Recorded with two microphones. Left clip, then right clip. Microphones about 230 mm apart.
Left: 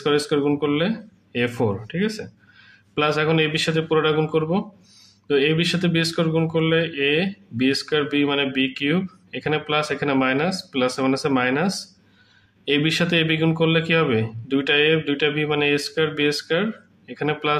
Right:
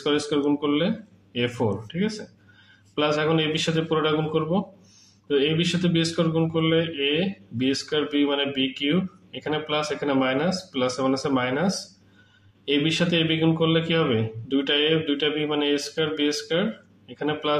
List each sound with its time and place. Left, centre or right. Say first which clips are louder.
0.0 s speech: left 3 dB; left
1.9 s speech: left 3 dB; left